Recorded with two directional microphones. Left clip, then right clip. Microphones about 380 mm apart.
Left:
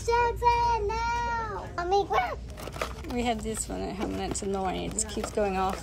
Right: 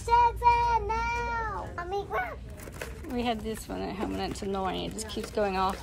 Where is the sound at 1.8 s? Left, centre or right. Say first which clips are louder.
Left 10 dB; left.